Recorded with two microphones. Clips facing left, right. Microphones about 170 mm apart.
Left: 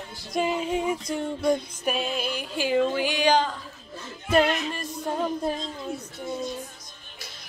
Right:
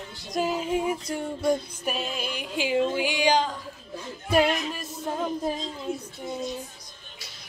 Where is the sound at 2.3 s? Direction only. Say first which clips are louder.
Even; 15° right (ahead or behind).